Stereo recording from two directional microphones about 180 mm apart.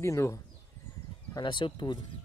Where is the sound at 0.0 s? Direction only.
15° left (ahead or behind).